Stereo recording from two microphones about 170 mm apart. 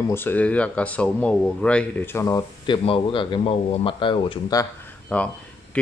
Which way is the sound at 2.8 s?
30° left (ahead or behind).